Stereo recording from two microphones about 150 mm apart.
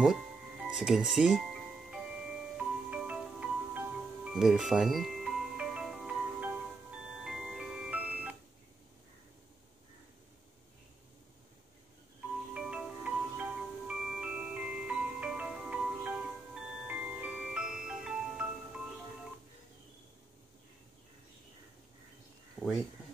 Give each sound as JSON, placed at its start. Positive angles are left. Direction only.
{"t": 0.0, "sound": "music", "side_deg": -5}
{"t": 12.5, "sound": "glockenspiel", "side_deg": -5}
{"t": 22.6, "sound": "a sound", "side_deg": -5}